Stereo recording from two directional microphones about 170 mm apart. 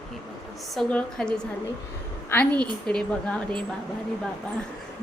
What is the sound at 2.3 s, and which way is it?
A woman's voice, 10° left (ahead or behind).